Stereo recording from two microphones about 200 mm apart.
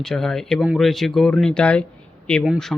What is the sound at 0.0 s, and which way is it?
Speech, centre (ahead or behind).